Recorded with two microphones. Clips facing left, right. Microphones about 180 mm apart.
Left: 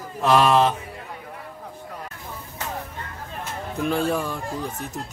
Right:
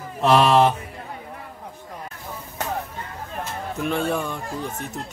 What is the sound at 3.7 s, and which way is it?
Speech, centre (ahead or behind).